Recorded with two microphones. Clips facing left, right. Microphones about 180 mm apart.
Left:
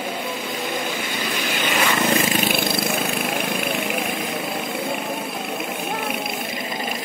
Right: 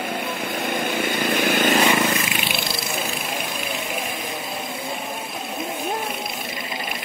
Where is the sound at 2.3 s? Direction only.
45° left (ahead or behind).